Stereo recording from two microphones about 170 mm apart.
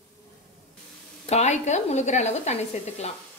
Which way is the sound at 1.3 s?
40° left (ahead or behind).